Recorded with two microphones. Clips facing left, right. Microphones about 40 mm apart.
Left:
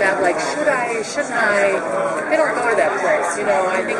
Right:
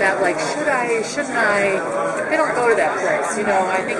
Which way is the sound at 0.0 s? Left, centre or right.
Centre.